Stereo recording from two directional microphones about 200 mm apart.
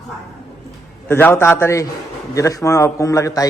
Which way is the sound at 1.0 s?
10° left (ahead or behind).